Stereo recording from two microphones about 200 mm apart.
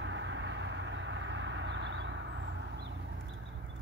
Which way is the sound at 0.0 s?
65° right (ahead or behind).